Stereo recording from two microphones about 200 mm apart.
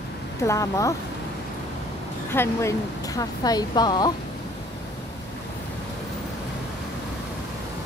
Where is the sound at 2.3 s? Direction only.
15° left (ahead or behind).